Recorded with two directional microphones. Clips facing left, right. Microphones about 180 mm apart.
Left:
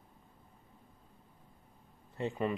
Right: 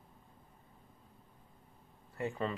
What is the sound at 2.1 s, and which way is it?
Speech, 20° left (ahead or behind).